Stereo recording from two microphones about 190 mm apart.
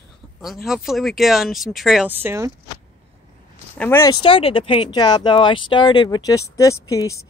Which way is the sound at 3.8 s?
15° left (ahead or behind).